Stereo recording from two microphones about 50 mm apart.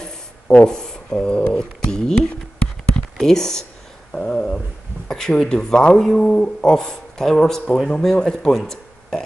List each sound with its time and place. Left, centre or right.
0.7 s speech: centre
4.1 s a sound: left
5.1 s speech: centre